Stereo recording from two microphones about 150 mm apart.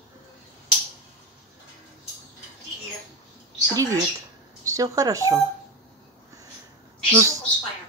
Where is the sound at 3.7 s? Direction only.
20° right (ahead or behind).